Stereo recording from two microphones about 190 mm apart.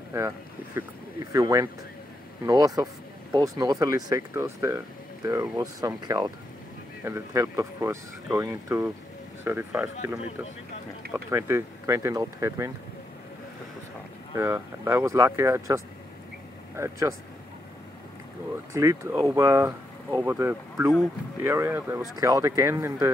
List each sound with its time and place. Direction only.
1.3 s speech: 20° right (ahead or behind)
11.1 s speech: 15° right (ahead or behind)
14.3 s speech: 15° right (ahead or behind)
18.8 s speech: 15° right (ahead or behind)